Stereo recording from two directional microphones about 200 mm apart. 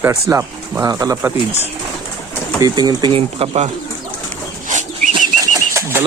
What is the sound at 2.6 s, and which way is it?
Speech, 20° right (ahead or behind).